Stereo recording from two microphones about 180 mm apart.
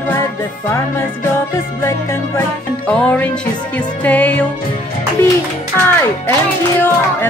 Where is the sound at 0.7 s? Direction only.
15° left (ahead or behind).